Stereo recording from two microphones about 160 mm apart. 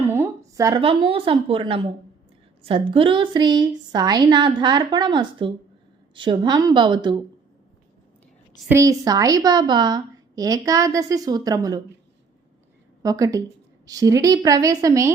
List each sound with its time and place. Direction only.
0.1 s a sound: 15° right (ahead or behind)
0.8 s a woman's voice: 35° right (ahead or behind)
8.7 s a woman's voice: 20° right (ahead or behind)
13.0 s a woman's voice: 20° right (ahead or behind)